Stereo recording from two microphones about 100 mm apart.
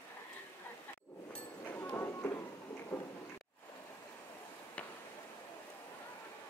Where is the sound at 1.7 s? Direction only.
25° left (ahead or behind).